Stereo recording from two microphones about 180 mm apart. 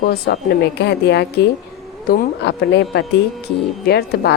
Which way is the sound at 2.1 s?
60° left (ahead or behind).